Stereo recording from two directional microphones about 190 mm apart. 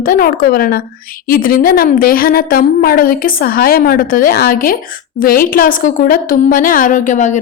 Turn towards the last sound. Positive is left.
turn(degrees=40)  # may be behind; listen again after turning